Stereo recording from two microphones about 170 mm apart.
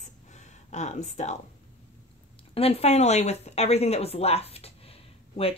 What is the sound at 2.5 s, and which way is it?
Speech, 35° left (ahead or behind).